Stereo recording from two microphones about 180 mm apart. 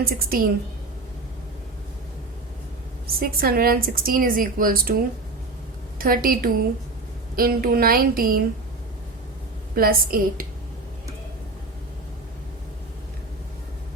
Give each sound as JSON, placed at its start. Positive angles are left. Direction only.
{"t": 0.0, "sound": "a woman's voice", "side_deg": -55}
{"t": 3.1, "sound": "a woman's voice", "side_deg": -55}
{"t": 6.0, "sound": "a woman's voice", "side_deg": -55}
{"t": 9.7, "sound": "a woman's voice", "side_deg": -55}